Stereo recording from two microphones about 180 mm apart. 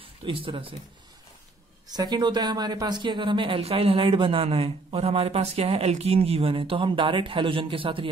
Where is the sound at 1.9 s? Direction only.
25° right (ahead or behind).